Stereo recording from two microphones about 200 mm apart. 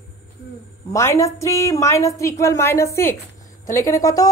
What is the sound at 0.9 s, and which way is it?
A woman's voice, 15° left (ahead or behind).